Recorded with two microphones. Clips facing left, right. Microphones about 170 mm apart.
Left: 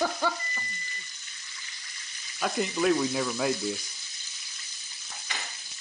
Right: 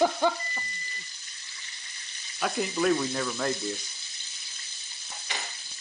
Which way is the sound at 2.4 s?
Centre (ahead or behind).